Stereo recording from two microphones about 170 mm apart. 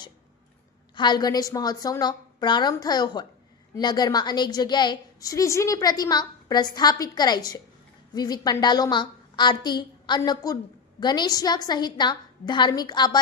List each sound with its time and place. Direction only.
0.9 s a woman's voice: 25° left (ahead or behind)